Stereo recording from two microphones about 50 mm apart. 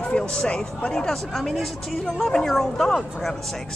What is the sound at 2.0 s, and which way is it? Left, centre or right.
Speech, centre.